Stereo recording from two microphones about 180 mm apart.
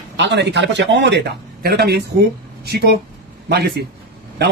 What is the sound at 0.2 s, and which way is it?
A man's voice, 75° right (ahead or behind).